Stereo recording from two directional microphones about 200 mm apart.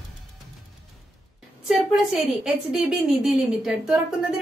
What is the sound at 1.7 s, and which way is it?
A woman's voice, 5° right (ahead or behind).